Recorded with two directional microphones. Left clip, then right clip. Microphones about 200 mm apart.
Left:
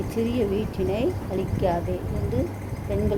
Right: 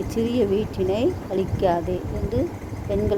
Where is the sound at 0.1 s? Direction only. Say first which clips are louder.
Right 4 dB; 30° right (ahead or behind).